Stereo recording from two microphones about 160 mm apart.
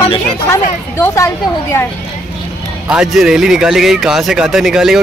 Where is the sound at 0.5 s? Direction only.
15° left (ahead or behind).